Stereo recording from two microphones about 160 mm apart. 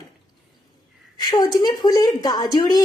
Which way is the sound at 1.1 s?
25° left (ahead or behind).